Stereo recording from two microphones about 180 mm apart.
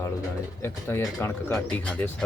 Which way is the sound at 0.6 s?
15° left (ahead or behind).